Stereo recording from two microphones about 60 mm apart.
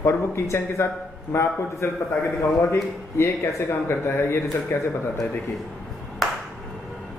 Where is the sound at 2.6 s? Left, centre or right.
Left.